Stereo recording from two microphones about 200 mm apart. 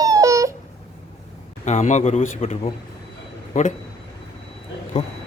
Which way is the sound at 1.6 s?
35° left (ahead or behind).